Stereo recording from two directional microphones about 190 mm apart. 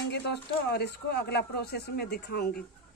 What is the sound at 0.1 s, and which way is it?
Speech, 60° left (ahead or behind).